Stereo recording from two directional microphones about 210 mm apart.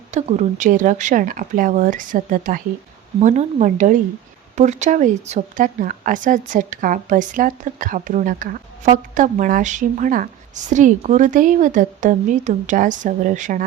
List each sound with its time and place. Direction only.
0.1 s a woman's voice: 35° right (ahead or behind)